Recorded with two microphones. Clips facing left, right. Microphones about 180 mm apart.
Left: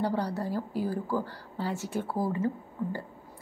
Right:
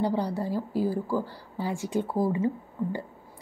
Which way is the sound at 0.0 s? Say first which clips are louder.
Right 2 dB; 15° right (ahead or behind).